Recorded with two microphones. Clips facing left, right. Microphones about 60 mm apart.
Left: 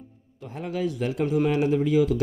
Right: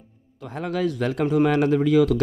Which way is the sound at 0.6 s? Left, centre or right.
Right.